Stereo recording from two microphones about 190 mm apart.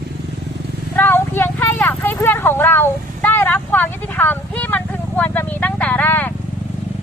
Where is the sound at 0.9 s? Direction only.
10° left (ahead or behind).